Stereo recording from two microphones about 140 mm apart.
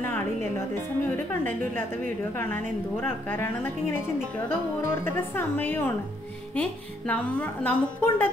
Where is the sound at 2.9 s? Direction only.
15° left (ahead or behind).